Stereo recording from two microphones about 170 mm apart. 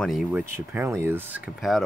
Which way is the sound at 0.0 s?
Centre (ahead or behind).